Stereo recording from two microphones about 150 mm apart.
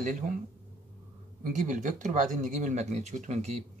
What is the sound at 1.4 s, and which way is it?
Speech, 55° right (ahead or behind).